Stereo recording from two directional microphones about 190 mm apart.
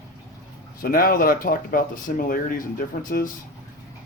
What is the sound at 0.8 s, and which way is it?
Speech, 50° left (ahead or behind).